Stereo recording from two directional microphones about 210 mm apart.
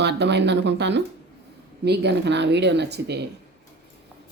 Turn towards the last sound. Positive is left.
turn(degrees=-55)  # may be behind; listen again after turning